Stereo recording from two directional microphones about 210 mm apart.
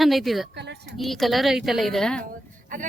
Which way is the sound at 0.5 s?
55° right (ahead or behind).